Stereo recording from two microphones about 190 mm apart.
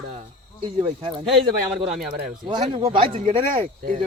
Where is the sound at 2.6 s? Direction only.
35° right (ahead or behind).